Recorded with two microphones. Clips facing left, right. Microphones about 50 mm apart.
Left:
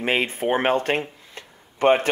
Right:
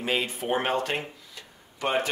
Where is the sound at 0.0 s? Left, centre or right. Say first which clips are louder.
Left 6 dB; left.